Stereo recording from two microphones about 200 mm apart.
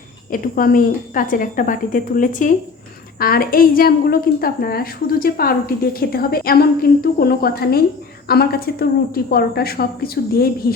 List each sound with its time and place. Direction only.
0.3 s a woman's voice: 45° left (ahead or behind)